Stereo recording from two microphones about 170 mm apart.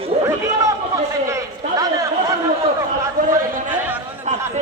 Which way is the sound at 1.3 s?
20° right (ahead or behind).